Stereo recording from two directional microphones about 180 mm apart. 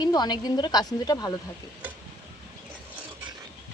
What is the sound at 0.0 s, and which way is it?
Speech, 25° left (ahead or behind).